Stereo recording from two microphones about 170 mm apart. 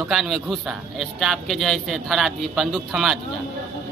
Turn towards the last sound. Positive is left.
turn(degrees=0)  # may be behind; listen again after turning